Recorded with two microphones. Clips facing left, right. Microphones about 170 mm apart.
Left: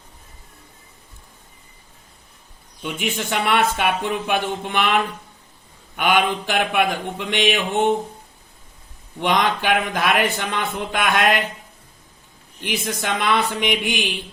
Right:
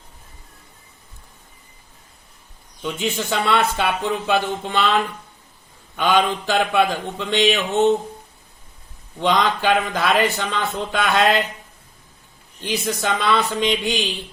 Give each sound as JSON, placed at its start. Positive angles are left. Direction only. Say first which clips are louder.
{"t": 2.8, "sound": "mantra", "louder": "right 2 dB", "side_deg": 15}
{"t": 6.0, "sound": "mantra", "louder": "right 1 dB", "side_deg": 15}
{"t": 9.3, "sound": "mantra", "louder": "right 1 dB", "side_deg": 15}
{"t": 12.5, "sound": "mantra", "louder": "right 2 dB", "side_deg": 15}